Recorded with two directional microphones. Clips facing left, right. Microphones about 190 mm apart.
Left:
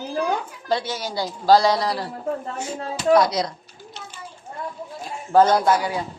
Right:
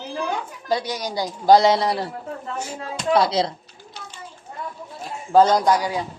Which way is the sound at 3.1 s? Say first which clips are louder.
Left 1 dB; 30° right (ahead or behind).